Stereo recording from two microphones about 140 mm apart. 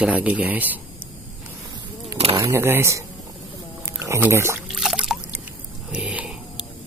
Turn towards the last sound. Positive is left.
turn(degrees=-10)  # may be behind; listen again after turning